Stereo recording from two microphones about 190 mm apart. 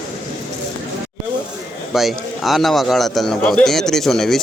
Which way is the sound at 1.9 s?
Centre (ahead or behind).